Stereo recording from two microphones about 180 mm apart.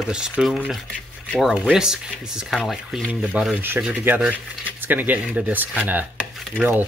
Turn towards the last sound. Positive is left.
turn(degrees=-10)  # may be behind; listen again after turning